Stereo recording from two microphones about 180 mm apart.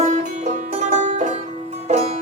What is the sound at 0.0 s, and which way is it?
Music, 40° right (ahead or behind).